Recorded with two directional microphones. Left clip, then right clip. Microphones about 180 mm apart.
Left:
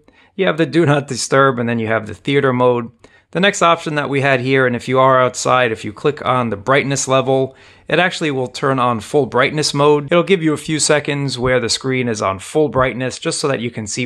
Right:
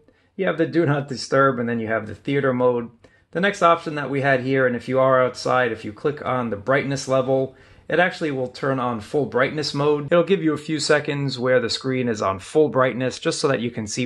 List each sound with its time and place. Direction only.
0.4 s speech: 40° left (ahead or behind)
10.0 s speech: 30° left (ahead or behind)